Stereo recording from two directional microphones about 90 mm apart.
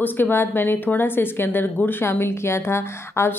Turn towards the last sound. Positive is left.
turn(degrees=30)  # may be behind; listen again after turning